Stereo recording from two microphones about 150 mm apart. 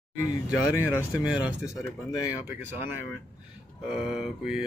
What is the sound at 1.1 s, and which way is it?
Speech, 5° right (ahead or behind).